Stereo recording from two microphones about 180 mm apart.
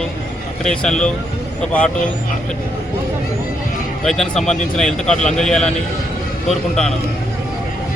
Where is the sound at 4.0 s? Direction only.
Centre (ahead or behind).